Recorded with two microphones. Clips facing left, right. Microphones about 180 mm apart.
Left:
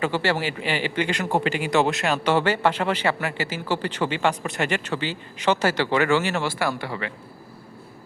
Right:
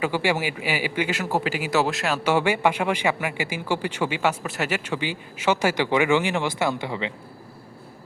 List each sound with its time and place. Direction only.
0.0 s a man's voice: 10° right (ahead or behind)